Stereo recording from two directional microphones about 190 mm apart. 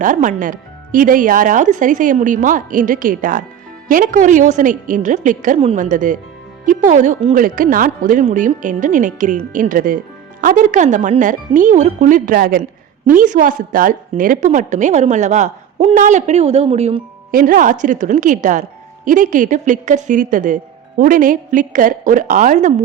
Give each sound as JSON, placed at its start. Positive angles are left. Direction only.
{"t": 0.0, "sound": "a woman's voice", "side_deg": -45}
{"t": 17.3, "sound": "speech", "side_deg": -45}